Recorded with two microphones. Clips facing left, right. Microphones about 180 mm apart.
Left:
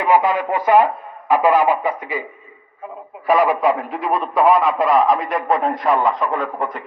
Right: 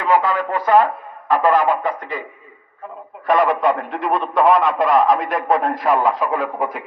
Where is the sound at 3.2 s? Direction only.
5° left (ahead or behind).